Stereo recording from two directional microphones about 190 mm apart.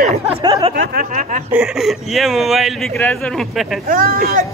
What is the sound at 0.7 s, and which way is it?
Speech, 45° right (ahead or behind).